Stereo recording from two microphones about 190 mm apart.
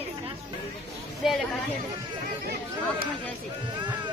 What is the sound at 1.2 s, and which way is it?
Speech, centre (ahead or behind).